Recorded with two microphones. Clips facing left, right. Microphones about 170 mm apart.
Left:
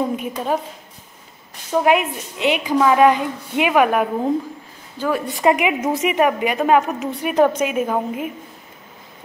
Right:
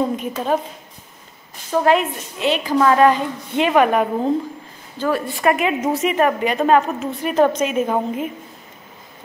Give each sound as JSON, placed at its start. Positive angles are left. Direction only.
{"t": 0.1, "sound": "a woman's voice", "side_deg": 10}
{"t": 1.8, "sound": "a woman's voice", "side_deg": 15}